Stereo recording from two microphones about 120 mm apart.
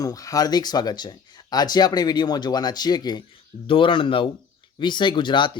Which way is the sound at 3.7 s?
45° left (ahead or behind).